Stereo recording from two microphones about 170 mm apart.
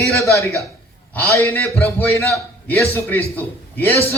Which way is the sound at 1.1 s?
15° left (ahead or behind).